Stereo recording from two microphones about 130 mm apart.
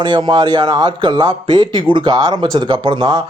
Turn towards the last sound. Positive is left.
turn(degrees=-40)  # may be behind; listen again after turning